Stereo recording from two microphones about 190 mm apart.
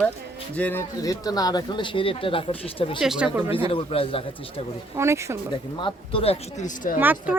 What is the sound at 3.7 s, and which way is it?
Speech, 30° left (ahead or behind).